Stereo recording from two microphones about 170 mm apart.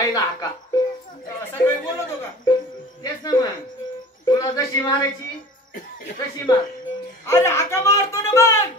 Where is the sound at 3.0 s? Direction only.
25° left (ahead or behind).